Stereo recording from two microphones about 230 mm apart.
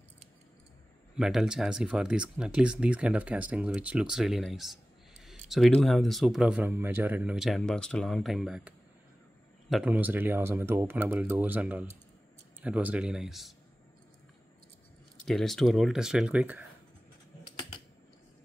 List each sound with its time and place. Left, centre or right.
1.1 s speech: centre
15.2 s speech: centre
17.5 s typing: centre